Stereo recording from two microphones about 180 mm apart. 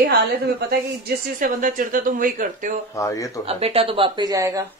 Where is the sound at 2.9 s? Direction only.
15° left (ahead or behind).